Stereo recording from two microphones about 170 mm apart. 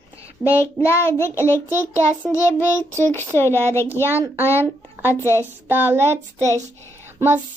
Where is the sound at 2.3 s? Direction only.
15° left (ahead or behind).